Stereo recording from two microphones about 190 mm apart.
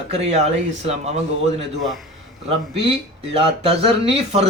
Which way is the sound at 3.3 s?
30° right (ahead or behind).